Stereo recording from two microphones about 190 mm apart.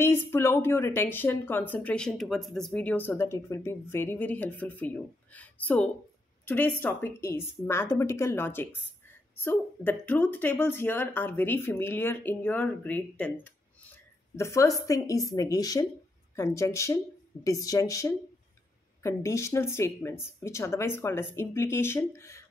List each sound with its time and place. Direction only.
0.0 s speech: 10° left (ahead or behind)
14.3 s speech: 15° left (ahead or behind)